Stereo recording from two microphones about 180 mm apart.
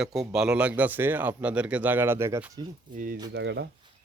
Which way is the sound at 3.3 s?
75° right (ahead or behind).